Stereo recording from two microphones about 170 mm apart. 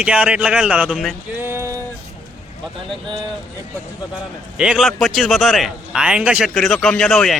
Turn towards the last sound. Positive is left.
turn(degrees=5)  # may be behind; listen again after turning